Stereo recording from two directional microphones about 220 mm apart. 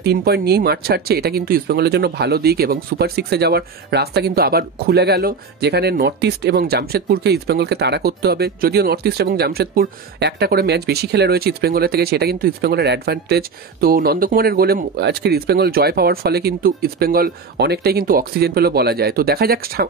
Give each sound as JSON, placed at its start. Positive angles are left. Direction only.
{"t": 0.0, "sound": "speech", "side_deg": -45}